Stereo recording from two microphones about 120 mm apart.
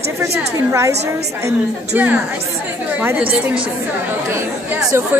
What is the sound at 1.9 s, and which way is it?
Speech, 15° right (ahead or behind).